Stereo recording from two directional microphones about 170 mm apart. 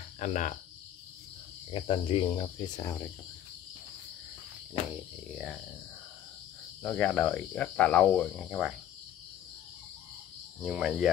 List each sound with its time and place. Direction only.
0.2 s cricket: 45° left (ahead or behind)
1.7 s speech: 30° left (ahead or behind)
2.8 s cricket: 15° left (ahead or behind)
6.8 s cricket: 10° left (ahead or behind)
8.5 s speech: 5° right (ahead or behind)
10.6 s speech: 5° right (ahead or behind)